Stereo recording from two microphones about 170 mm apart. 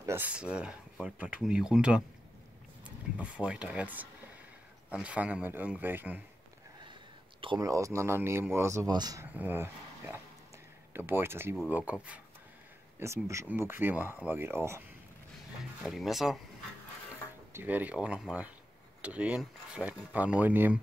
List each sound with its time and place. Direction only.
0.0 s speech: 10° right (ahead or behind)
3.2 s speech: 10° right (ahead or behind)
6.9 s a man's voice: 30° right (ahead or behind)
15.8 s speech: centre (ahead or behind)
17.5 s speech: 10° right (ahead or behind)